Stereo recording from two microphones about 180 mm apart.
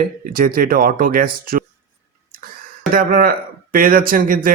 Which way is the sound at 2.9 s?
50° right (ahead or behind).